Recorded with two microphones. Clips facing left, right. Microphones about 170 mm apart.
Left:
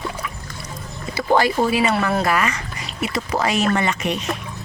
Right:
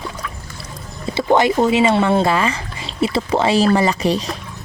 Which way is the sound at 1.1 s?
20° right (ahead or behind).